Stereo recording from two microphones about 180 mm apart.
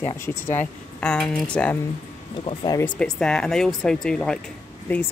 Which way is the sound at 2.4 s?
25° left (ahead or behind).